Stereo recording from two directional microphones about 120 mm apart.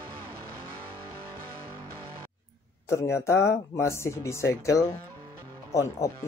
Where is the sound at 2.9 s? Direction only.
25° left (ahead or behind).